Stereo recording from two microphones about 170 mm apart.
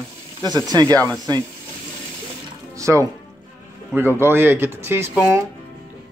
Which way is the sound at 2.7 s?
15° right (ahead or behind).